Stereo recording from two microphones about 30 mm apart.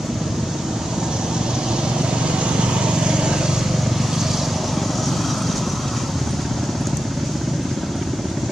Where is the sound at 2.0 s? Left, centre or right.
Right.